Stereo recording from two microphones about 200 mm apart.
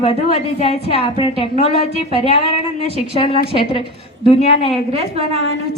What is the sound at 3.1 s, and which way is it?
A woman's voice, 30° left (ahead or behind).